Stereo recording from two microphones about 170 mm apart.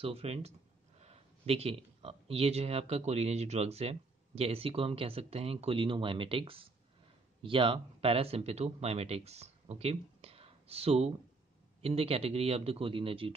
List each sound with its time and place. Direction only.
0.0 s speech: 35° right (ahead or behind)